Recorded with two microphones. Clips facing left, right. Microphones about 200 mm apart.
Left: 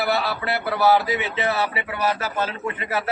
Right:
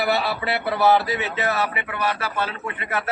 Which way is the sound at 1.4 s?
35° left (ahead or behind).